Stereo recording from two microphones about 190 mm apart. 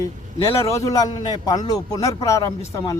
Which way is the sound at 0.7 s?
15° left (ahead or behind).